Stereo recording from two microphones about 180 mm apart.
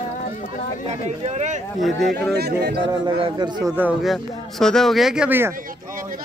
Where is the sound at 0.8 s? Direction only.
40° right (ahead or behind).